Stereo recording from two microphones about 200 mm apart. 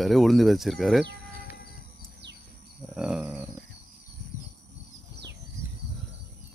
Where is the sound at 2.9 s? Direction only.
5° right (ahead or behind).